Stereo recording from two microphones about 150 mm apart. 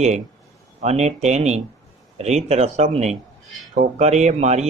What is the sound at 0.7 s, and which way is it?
Speech, 50° right (ahead or behind).